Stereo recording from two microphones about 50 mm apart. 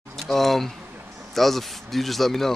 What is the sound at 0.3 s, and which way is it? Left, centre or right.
Speech, centre.